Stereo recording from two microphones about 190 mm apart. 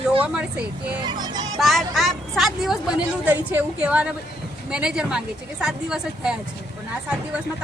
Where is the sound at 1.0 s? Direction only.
20° right (ahead or behind).